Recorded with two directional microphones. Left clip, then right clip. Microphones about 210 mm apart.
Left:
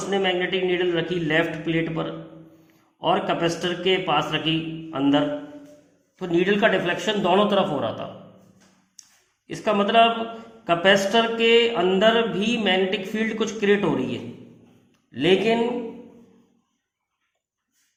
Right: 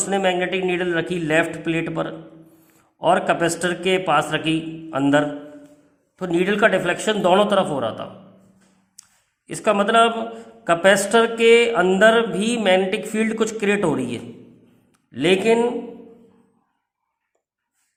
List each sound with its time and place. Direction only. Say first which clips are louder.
0.0 s mantra: right 3 dB; 40° right (ahead or behind)
9.5 s mantra: right 3 dB; 35° right (ahead or behind)